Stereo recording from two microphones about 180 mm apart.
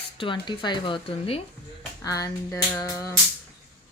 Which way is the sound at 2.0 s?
20° left (ahead or behind).